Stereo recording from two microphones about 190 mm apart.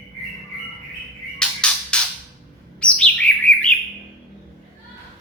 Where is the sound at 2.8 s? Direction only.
5° left (ahead or behind).